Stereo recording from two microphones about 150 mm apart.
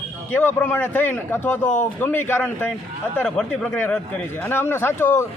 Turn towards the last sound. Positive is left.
turn(degrees=15)  # may be behind; listen again after turning